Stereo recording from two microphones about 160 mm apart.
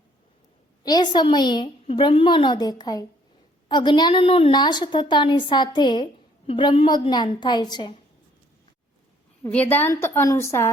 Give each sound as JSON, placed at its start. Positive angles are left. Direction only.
{"t": 0.9, "sound": "a woman's voice", "side_deg": 25}
{"t": 9.5, "sound": "a woman's voice", "side_deg": 10}